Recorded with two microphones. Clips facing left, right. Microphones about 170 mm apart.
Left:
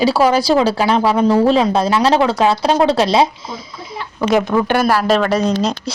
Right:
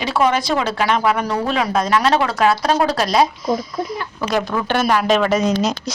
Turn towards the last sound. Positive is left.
turn(degrees=-5)  # may be behind; listen again after turning